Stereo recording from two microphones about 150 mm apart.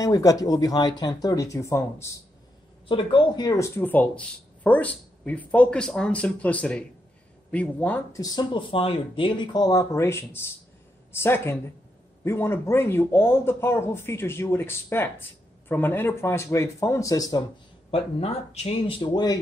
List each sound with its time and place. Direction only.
0.0 s speech: 25° left (ahead or behind)
2.9 s speech: 35° left (ahead or behind); by 8.0 s 10° left (ahead or behind)
8.1 s speech: 25° left (ahead or behind)
17.9 s speech: 40° left (ahead or behind)